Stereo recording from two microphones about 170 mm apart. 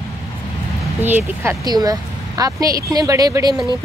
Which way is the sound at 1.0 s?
10° right (ahead or behind).